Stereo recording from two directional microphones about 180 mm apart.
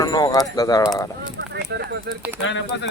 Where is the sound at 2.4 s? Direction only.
85° left.